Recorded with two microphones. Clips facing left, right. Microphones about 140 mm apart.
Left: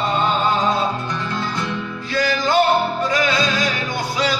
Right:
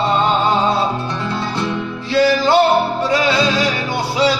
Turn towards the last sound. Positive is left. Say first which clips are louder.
# right 5 dB
turn(degrees=-30)  # may be behind; listen again after turning